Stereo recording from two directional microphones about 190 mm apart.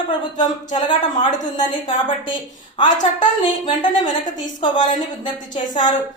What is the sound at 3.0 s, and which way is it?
Speech, 40° left (ahead or behind).